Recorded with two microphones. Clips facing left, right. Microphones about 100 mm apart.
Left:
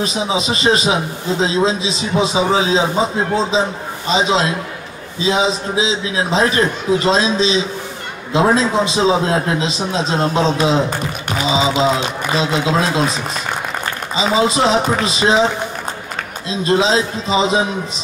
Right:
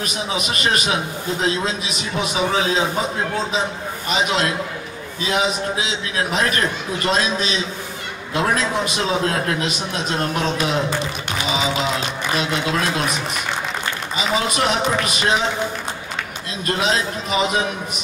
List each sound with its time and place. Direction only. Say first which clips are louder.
0.0 s a man's voice: left 6 dB; 25° left (ahead or behind)
14.1 s a man's voice: left 6 dB; 25° left (ahead or behind)
16.4 s a man's voice: left 7 dB; 25° left (ahead or behind)